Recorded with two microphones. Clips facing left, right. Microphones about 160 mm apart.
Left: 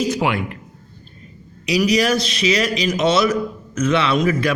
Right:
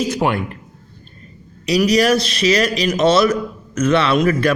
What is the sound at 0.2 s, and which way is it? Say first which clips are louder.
Speech: right 4 dB; 45° right (ahead or behind).